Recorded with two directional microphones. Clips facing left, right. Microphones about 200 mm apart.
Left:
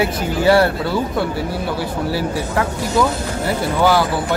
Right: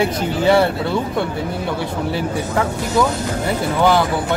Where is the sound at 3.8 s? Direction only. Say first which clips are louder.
Even; 5° left (ahead or behind).